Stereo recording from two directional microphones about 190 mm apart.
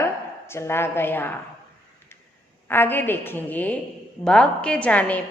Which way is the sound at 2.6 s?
10° left (ahead or behind).